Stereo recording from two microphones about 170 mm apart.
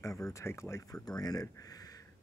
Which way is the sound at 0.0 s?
20° left (ahead or behind).